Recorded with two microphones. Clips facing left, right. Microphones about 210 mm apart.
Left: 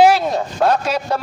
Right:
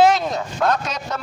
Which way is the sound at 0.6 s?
30° left (ahead or behind).